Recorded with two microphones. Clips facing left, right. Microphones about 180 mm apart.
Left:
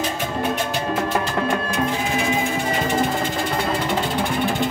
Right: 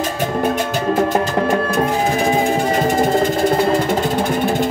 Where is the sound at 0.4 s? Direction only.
45° right (ahead or behind).